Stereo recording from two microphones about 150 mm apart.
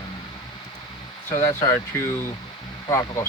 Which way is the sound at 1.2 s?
20° left (ahead or behind).